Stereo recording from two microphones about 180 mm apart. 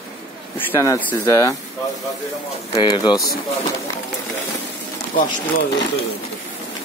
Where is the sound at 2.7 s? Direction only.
20° left (ahead or behind).